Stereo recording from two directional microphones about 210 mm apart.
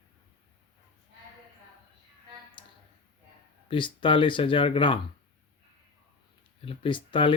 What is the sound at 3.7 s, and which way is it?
Speech, 25° left (ahead or behind).